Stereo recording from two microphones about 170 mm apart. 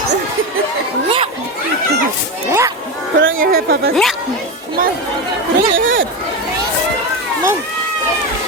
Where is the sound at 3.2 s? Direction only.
60° right (ahead or behind).